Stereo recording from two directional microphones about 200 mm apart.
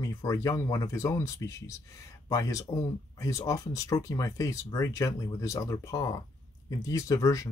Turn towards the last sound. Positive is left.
turn(degrees=15)  # may be behind; listen again after turning